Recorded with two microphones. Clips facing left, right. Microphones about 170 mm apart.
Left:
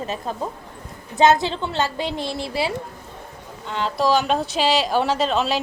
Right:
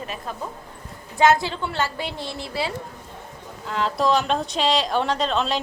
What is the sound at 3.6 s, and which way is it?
Speech, centre (ahead or behind).